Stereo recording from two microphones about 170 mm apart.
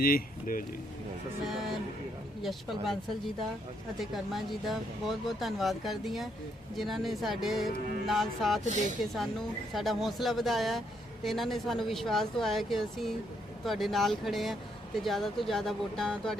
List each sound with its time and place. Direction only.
0.0 s speech: 55° left (ahead or behind)
1.5 s speech: centre (ahead or behind)
4.0 s speech: centre (ahead or behind)
8.6 s speech: 45° right (ahead or behind)
9.7 s speech: centre (ahead or behind)